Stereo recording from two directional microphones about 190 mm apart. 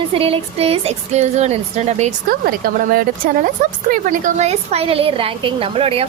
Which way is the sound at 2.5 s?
50° right (ahead or behind).